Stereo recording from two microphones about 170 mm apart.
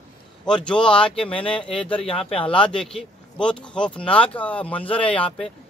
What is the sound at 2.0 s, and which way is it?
Speech, 30° left (ahead or behind).